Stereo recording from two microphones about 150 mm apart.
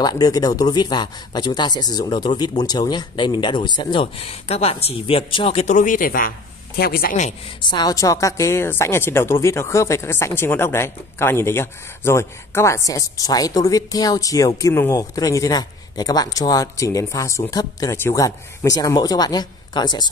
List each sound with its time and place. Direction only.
0.0 s a woman's voice: 25° left (ahead or behind)
5.8 s speech: 65° left (ahead or behind)
6.8 s a man's voice: 85° left
7.7 s a woman's voice: 25° left (ahead or behind)